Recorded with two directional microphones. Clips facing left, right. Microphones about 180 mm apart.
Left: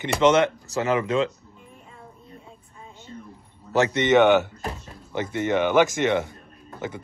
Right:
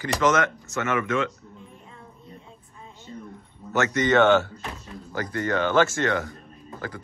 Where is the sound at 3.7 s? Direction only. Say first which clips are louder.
Left 3 dB; 30° left (ahead or behind).